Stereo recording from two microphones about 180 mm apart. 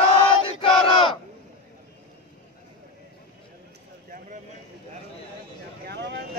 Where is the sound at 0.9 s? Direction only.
30° left (ahead or behind).